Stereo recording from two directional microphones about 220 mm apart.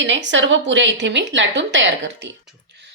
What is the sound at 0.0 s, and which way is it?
A woman's voice, 55° right (ahead or behind).